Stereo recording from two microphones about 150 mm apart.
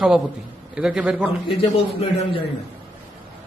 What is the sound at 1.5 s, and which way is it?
Speech, 35° left (ahead or behind).